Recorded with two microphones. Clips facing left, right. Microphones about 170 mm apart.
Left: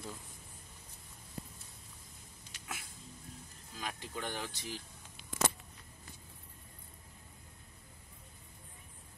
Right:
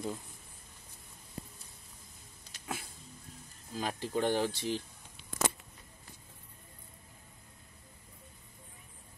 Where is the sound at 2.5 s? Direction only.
30° right (ahead or behind).